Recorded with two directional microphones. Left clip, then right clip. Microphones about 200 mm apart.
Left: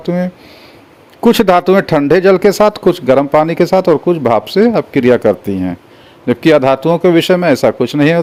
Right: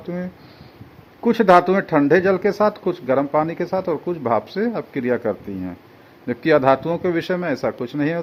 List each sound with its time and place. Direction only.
0.0 s a man's voice: 45° left (ahead or behind)